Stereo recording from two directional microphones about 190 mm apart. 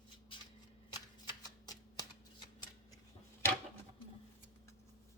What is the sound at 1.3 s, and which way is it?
Shuffling cards, 20° left (ahead or behind).